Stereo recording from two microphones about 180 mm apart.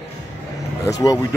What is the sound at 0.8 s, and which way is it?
Speech, 20° left (ahead or behind).